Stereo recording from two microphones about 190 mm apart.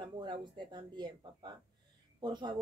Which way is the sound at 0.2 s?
25° right (ahead or behind).